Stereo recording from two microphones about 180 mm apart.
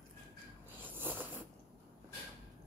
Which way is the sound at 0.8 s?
10° right (ahead or behind).